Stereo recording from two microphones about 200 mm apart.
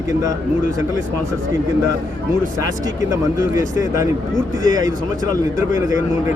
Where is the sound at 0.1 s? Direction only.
15° right (ahead or behind).